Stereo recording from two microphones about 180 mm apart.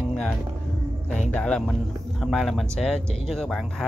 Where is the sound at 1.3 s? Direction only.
5° left (ahead or behind).